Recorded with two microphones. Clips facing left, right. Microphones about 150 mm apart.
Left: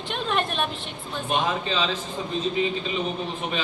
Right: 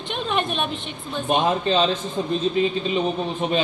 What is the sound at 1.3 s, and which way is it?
Speech, 50° right (ahead or behind).